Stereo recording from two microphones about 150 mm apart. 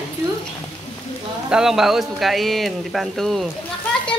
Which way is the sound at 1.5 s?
5° right (ahead or behind).